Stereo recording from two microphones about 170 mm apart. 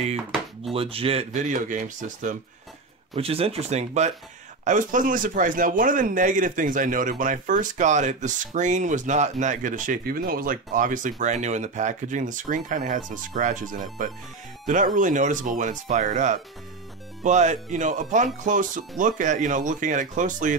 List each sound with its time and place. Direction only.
0.7 s speech: 35° right (ahead or behind); by 2.3 s 50° right (ahead or behind)
3.2 s speech: 35° right (ahead or behind)